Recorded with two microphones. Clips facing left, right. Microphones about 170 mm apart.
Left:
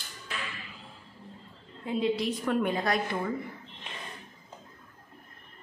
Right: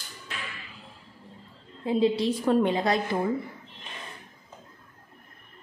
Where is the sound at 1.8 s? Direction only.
30° right (ahead or behind).